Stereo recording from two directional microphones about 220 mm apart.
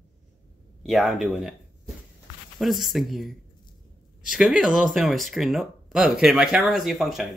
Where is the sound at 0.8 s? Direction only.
Centre (ahead or behind).